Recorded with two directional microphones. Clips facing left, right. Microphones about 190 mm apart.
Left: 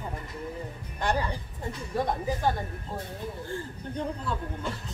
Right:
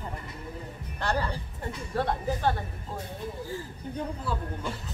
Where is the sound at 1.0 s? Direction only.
15° left (ahead or behind).